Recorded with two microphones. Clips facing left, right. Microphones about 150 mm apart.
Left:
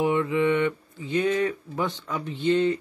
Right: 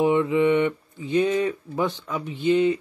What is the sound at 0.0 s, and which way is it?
Speech, 20° right (ahead or behind).